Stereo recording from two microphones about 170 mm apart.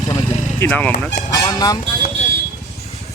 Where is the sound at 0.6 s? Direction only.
10° left (ahead or behind).